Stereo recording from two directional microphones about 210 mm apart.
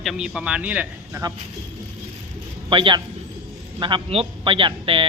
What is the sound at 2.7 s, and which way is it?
Speech, 25° right (ahead or behind).